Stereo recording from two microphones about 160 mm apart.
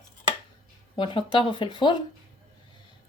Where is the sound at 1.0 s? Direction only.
30° left (ahead or behind).